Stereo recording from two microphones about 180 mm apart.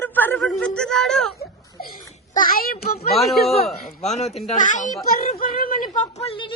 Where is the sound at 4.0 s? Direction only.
40° left (ahead or behind).